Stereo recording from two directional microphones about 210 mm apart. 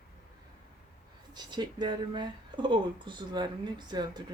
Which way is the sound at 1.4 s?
20° right (ahead or behind).